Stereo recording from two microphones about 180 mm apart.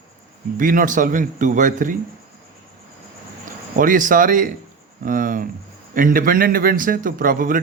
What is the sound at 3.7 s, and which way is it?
A man's voice, 50° right (ahead or behind).